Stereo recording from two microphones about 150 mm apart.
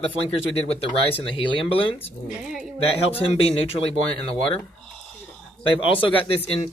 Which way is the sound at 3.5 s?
40° left (ahead or behind).